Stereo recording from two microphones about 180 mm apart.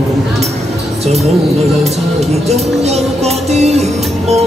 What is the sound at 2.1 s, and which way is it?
Music, 35° right (ahead or behind).